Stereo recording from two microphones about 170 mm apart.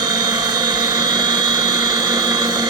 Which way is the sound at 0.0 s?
25° right (ahead or behind).